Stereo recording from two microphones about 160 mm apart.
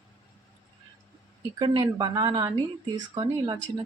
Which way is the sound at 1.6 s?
30° right (ahead or behind).